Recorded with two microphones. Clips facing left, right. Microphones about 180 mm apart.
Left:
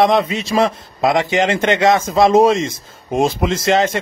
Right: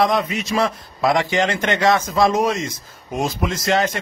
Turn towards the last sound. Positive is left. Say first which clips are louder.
# left 4 dB
turn(degrees=25)  # may be behind; listen again after turning